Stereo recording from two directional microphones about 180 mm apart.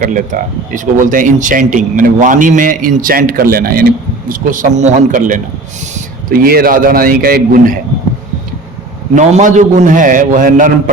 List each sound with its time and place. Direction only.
0.0 s speech: 45° right (ahead or behind)
6.2 s speech: 55° right (ahead or behind)
9.1 s speech: 45° right (ahead or behind)